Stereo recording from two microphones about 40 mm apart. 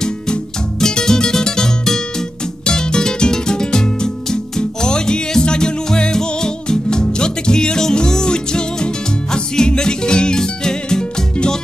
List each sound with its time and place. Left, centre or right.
0.0 s music: centre